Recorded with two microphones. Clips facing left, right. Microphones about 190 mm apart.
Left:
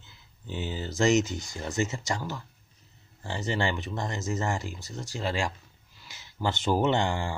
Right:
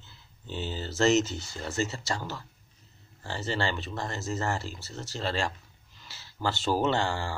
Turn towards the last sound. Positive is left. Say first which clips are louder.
# left 2 dB
turn(degrees=20)  # may be behind; listen again after turning